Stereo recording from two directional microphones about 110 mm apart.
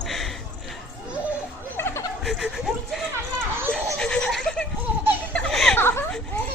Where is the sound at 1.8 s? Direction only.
20° left (ahead or behind).